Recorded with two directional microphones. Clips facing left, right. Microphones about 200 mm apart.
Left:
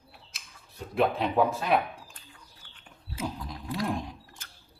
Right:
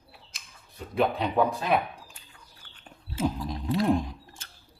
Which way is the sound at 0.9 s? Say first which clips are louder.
Even; centre (ahead or behind).